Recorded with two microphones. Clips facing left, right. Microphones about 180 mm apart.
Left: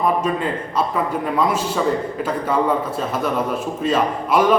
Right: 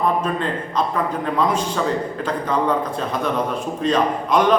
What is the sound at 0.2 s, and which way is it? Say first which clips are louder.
A man's voice: left 1 dB; 10° left (ahead or behind).